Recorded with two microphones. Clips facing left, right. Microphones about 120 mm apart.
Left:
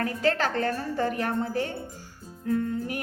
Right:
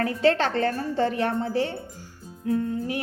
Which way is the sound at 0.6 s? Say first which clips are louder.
Right 3 dB; 45° right (ahead or behind).